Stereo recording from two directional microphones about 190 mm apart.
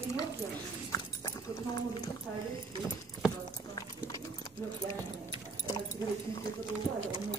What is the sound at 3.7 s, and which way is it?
Clip-clop, 20° left (ahead or behind).